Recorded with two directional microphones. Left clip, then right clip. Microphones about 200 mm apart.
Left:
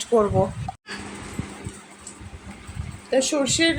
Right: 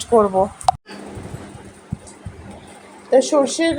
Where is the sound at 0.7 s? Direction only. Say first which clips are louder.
Right 18 dB; 50° right (ahead or behind).